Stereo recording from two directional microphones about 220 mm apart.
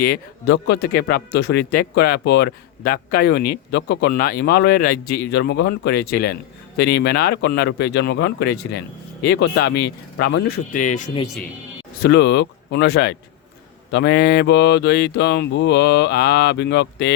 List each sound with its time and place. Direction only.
0.1 s speech: 50° left (ahead or behind); by 11.2 s 35° left (ahead or behind)
12.0 s speech: 50° left (ahead or behind)